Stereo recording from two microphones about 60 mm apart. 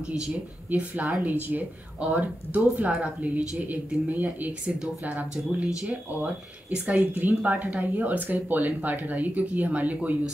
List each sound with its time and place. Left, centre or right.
0.0 s speech: centre
0.7 s speech: right